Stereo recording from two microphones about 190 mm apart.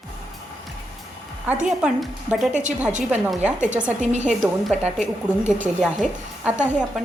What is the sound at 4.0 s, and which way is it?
Speech, 40° right (ahead or behind).